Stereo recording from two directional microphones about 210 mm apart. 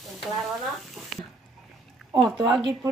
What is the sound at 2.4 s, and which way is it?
Speech, 20° right (ahead or behind).